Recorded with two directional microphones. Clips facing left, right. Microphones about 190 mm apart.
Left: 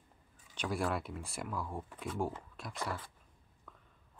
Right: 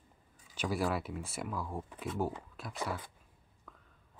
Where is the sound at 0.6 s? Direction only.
Centre (ahead or behind).